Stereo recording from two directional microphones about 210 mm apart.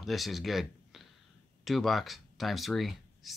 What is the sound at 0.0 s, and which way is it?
Speech, centre (ahead or behind).